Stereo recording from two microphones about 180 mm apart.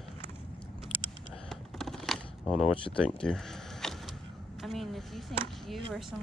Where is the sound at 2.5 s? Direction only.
35° left (ahead or behind).